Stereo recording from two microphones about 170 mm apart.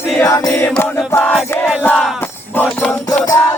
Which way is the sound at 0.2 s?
20° left (ahead or behind).